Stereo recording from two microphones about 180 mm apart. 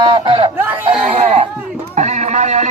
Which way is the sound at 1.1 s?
35° right (ahead or behind).